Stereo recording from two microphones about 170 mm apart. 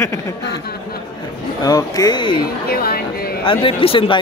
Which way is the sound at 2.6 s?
65° left (ahead or behind).